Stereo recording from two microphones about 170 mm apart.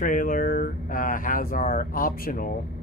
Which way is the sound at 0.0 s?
50° left (ahead or behind).